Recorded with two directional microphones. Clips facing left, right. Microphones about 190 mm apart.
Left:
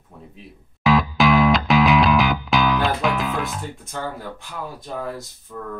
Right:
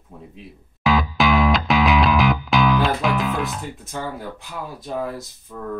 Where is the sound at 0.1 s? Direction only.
5° right (ahead or behind).